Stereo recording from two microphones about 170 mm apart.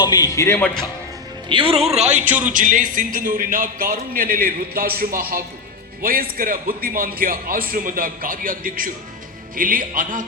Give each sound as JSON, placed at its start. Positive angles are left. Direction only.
{"t": 0.0, "sound": "a man's voice", "side_deg": 25}
{"t": 1.5, "sound": "a man's voice", "side_deg": -30}